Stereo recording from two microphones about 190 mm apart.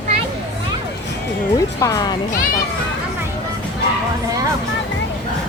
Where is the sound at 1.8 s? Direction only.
20° left (ahead or behind).